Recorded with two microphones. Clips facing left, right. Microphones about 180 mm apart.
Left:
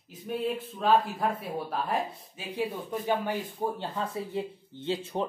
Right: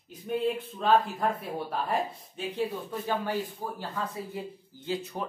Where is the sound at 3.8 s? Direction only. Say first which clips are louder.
Left 2 dB; 25° left (ahead or behind).